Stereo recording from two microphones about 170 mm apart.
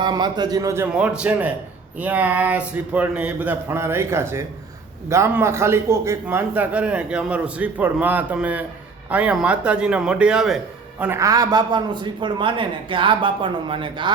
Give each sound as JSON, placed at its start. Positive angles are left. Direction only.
{"t": 0.0, "sound": "speech", "side_deg": -25}
{"t": 0.9, "sound": "a man's voice", "side_deg": -5}
{"t": 11.0, "sound": "speech", "side_deg": -15}